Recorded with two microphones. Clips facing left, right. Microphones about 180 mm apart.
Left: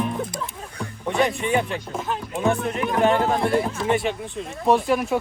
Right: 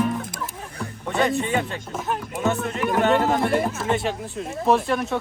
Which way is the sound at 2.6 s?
20° left (ahead or behind).